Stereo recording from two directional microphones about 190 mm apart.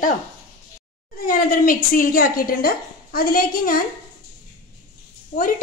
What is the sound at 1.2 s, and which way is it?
A woman's voice, 45° left (ahead or behind).